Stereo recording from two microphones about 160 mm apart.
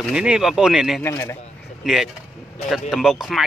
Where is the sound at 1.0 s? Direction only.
15° left (ahead or behind).